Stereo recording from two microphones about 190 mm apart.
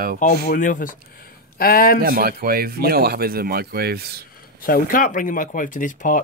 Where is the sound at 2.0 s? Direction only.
50° right (ahead or behind).